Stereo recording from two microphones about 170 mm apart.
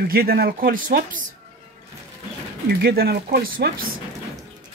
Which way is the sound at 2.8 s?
70° right (ahead or behind).